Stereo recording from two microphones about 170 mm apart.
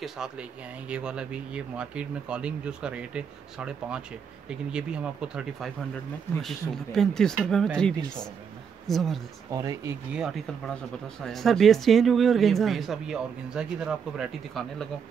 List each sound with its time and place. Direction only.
0.0 s speech: 5° right (ahead or behind)
9.5 s speech: 20° right (ahead or behind)
10.1 s speech: centre (ahead or behind)